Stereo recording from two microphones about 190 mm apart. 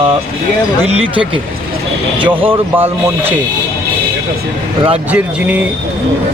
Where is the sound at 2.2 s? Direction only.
10° right (ahead or behind).